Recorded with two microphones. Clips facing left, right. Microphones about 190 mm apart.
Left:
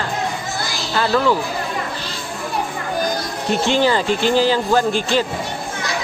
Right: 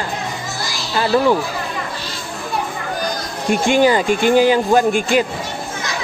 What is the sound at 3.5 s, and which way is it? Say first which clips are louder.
Speech: right 3 dB; 15° right (ahead or behind).